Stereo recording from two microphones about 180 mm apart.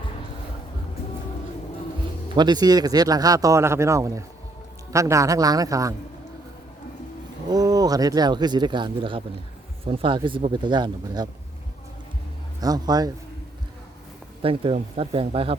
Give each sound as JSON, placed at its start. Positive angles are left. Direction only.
{"t": 2.3, "sound": "a man's voice", "side_deg": -25}
{"t": 7.5, "sound": "a man's voice", "side_deg": -20}
{"t": 12.5, "sound": "a man's voice", "side_deg": -20}
{"t": 14.4, "sound": "speech", "side_deg": -30}